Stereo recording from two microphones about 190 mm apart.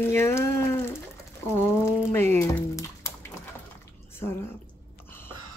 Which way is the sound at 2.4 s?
15° left (ahead or behind).